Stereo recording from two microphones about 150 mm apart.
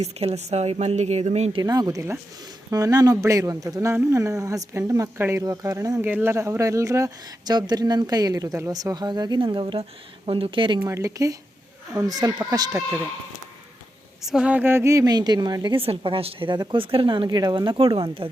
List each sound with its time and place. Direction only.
0.0 s speech: 45° right (ahead or behind)
1.6 s a woman's voice: 25° right (ahead or behind)
10.8 s a woman's voice: 20° right (ahead or behind)
14.2 s a woman's voice: 5° right (ahead or behind); by 18.3 s 35° right (ahead or behind)